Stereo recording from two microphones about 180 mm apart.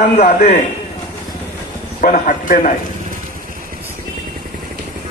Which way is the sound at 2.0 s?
45° left (ahead or behind).